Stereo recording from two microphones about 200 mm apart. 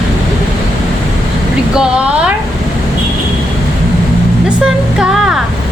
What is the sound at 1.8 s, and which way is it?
Music, 5° right (ahead or behind).